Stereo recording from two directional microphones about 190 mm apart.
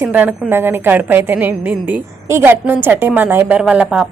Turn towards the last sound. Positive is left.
turn(degrees=-5)  # may be behind; listen again after turning